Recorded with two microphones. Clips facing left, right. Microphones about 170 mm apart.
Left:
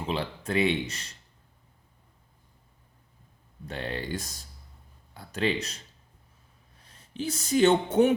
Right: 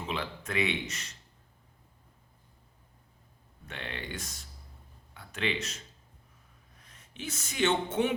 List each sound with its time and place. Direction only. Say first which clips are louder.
0.0 s speech: left 5 dB; 30° left (ahead or behind)
3.7 s speech: left 7 dB; 35° left (ahead or behind)